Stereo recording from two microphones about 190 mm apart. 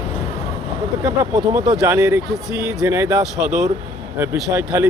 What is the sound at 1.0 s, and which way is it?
Speech, 15° right (ahead or behind).